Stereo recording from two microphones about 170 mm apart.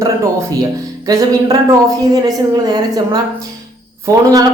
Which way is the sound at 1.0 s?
20° right (ahead or behind).